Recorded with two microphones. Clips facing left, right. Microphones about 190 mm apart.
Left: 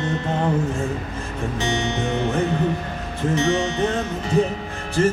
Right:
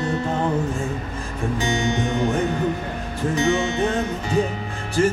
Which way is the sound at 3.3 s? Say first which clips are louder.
Even; 35° left (ahead or behind).